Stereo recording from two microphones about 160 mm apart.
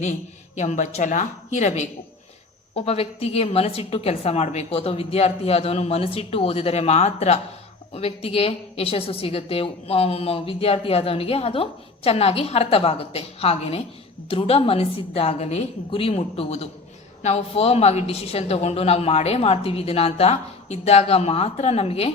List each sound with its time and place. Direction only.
0.0 s a woman's voice: 45° left (ahead or behind)